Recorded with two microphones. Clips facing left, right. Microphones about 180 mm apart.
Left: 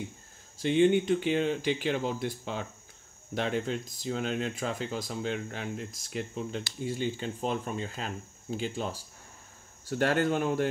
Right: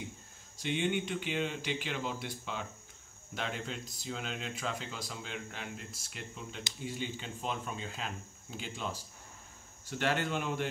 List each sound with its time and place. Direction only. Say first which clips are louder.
0.7 s speech: left 10 dB; 40° left (ahead or behind)